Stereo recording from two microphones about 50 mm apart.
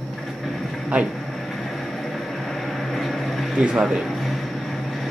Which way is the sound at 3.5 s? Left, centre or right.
Centre.